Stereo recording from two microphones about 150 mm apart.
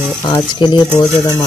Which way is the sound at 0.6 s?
30° left (ahead or behind).